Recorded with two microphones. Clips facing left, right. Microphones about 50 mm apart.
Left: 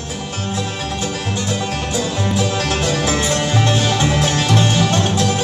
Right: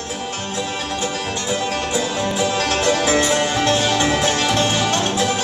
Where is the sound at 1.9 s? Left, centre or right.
Centre.